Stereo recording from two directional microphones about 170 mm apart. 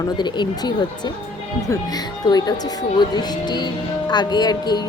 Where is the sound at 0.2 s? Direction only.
25° left (ahead or behind).